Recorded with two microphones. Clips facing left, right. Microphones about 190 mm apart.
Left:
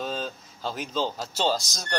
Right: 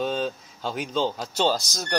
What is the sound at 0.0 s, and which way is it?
Speech, centre (ahead or behind).